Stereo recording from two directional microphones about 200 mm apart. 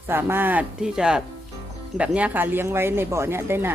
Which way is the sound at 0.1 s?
10° right (ahead or behind).